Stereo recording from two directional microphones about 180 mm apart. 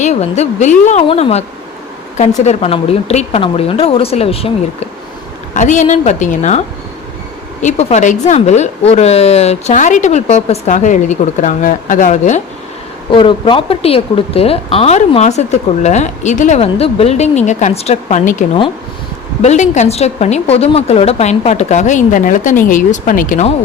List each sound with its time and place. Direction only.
0.0 s speech: 40° left (ahead or behind)
7.6 s speech: 40° left (ahead or behind)
13.1 s speech: 30° left (ahead or behind)